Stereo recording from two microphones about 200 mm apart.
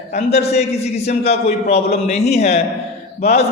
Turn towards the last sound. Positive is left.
turn(degrees=30)  # may be behind; listen again after turning